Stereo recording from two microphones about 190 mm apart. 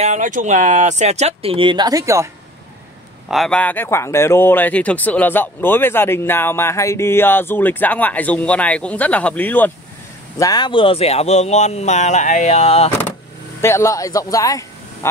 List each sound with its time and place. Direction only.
0.0 s speech: 40° right (ahead or behind); by 2.2 s 15° right (ahead or behind)
3.3 s speech: centre (ahead or behind)
10.4 s speech: 20° left (ahead or behind)
13.6 s speech: 15° left (ahead or behind)